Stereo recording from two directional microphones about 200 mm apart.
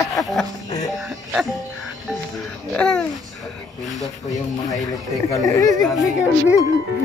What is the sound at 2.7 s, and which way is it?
Speech, 5° left (ahead or behind).